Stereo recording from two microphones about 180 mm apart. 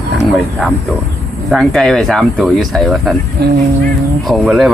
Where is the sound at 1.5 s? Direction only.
Centre (ahead or behind).